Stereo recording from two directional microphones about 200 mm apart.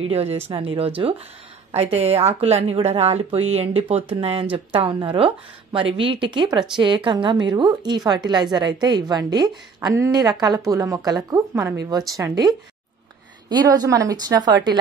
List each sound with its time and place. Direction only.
0.1 s a woman's voice: 30° right (ahead or behind)